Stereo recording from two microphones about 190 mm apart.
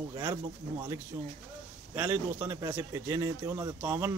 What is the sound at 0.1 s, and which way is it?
A man's voice, 15° right (ahead or behind).